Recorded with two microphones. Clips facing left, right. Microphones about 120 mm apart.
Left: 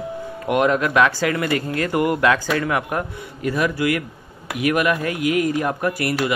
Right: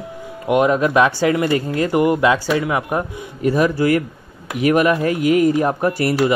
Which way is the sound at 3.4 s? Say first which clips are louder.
Right 5 dB; 30° right (ahead or behind).